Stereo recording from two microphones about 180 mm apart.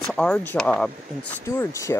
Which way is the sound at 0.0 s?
5° left (ahead or behind).